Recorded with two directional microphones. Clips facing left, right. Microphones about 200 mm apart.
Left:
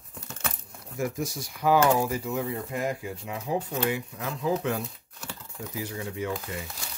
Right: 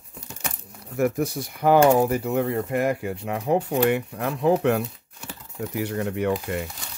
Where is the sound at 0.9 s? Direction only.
60° right (ahead or behind).